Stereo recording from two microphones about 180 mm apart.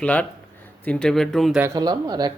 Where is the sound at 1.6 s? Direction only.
20° right (ahead or behind).